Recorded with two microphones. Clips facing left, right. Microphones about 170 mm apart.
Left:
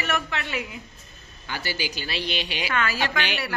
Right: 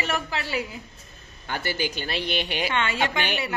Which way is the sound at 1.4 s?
50° right (ahead or behind).